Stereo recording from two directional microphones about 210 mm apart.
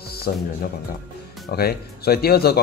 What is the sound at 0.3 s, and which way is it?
Speech, 45° left (ahead or behind).